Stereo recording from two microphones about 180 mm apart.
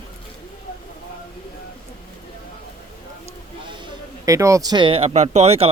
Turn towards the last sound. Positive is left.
turn(degrees=-35)  # may be behind; listen again after turning